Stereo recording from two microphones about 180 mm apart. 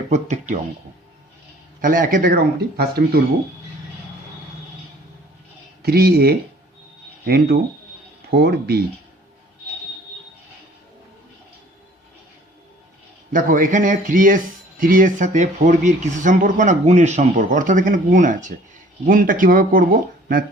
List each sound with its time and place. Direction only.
0.1 s speech: 40° right (ahead or behind)
1.8 s speech: 50° right (ahead or behind)
5.8 s speech: 60° right (ahead or behind)
13.3 s speech: 45° right (ahead or behind)